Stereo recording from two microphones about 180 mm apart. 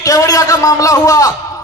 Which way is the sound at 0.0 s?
20° left (ahead or behind).